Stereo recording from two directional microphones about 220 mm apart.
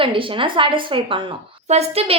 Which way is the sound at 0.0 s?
25° right (ahead or behind).